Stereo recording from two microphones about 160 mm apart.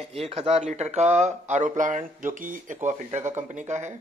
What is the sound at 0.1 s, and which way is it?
A man's voice, 40° right (ahead or behind).